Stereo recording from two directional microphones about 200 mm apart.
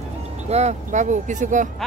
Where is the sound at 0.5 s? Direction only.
35° right (ahead or behind).